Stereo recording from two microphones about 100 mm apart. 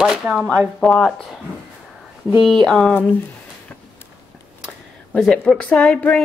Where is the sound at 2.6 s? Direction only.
5° left (ahead or behind).